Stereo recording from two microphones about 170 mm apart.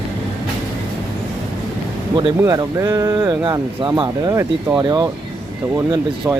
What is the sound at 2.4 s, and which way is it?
Speech, 20° right (ahead or behind).